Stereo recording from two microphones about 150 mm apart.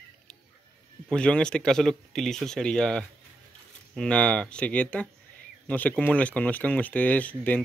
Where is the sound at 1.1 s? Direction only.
5° left (ahead or behind).